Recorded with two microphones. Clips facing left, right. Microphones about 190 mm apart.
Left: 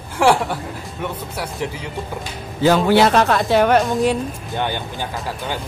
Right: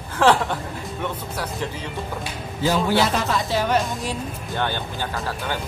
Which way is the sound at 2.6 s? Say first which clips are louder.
Left 6 dB; 65° left (ahead or behind).